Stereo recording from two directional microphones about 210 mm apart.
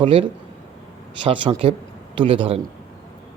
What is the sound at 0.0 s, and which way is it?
Speech, 25° right (ahead or behind).